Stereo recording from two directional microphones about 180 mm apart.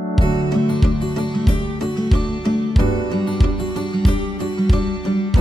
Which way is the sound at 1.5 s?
25° left (ahead or behind).